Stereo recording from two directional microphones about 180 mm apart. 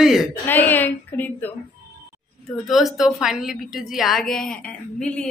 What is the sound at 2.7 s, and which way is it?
A woman's voice, centre (ahead or behind).